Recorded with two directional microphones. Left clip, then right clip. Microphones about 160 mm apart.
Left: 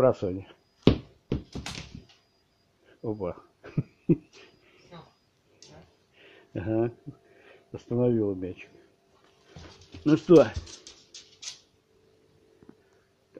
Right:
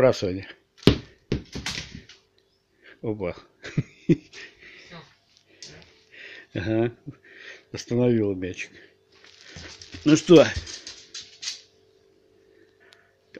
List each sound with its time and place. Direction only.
0.0 s speech: 10° right (ahead or behind)
0.8 s tap: 10° left (ahead or behind)
3.0 s throat clearing: 10° right (ahead or behind)
6.1 s a sound: 15° right (ahead or behind)
7.4 s speech: 15° right (ahead or behind)
10.0 s speech: 15° right (ahead or behind)